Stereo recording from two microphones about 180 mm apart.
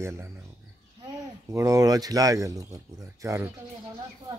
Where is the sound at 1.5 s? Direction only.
20° right (ahead or behind).